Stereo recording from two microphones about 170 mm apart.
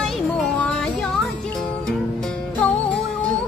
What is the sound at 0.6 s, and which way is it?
Music, centre (ahead or behind).